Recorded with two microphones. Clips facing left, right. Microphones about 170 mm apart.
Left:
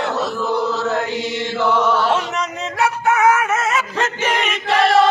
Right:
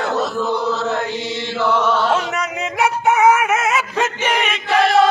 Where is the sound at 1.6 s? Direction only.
15° left (ahead or behind).